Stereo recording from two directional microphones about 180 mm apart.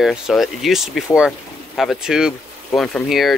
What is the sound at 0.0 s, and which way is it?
Speech, centre (ahead or behind).